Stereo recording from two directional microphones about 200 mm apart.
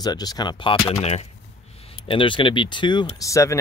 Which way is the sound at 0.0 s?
20° left (ahead or behind).